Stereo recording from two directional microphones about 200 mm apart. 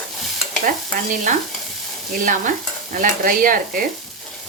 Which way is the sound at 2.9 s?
40° right (ahead or behind).